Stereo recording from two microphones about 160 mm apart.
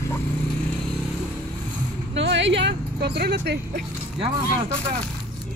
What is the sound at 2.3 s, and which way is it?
Speech, 90° right.